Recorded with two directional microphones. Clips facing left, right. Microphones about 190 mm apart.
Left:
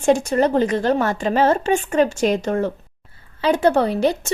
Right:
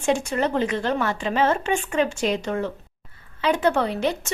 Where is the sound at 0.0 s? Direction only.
40° left (ahead or behind).